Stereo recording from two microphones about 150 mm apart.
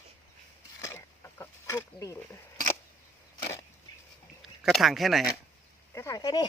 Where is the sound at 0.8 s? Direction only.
20° left (ahead or behind).